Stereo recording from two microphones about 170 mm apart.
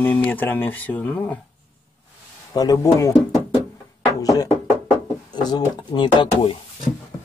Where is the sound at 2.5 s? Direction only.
20° left (ahead or behind).